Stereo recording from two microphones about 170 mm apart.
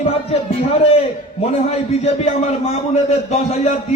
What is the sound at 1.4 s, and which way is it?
A man's voice, 40° left (ahead or behind).